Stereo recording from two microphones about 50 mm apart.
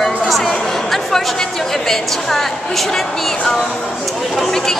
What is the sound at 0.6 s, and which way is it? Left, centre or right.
A woman's voice, centre.